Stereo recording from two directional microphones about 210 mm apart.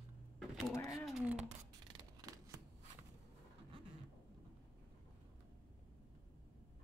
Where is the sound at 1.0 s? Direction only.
5° right (ahead or behind).